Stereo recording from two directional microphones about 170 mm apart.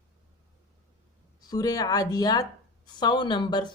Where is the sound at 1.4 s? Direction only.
20° left (ahead or behind).